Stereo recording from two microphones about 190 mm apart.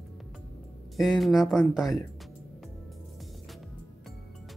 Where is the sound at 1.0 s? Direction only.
Centre (ahead or behind).